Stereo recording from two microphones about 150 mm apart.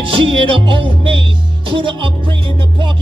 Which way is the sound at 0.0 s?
35° right (ahead or behind).